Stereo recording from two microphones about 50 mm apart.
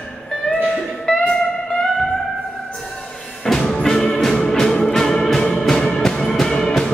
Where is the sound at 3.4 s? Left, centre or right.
Centre.